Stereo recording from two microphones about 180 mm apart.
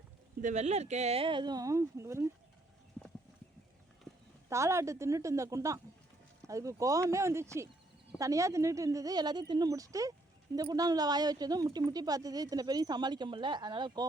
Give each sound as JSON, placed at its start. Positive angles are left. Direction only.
{"t": 0.4, "sound": "a woman's voice", "side_deg": -40}
{"t": 4.4, "sound": "a woman's voice", "side_deg": -15}